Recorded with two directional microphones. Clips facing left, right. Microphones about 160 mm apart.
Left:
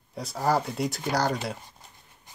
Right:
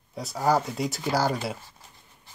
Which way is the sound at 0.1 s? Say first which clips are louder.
Right 2 dB; centre (ahead or behind).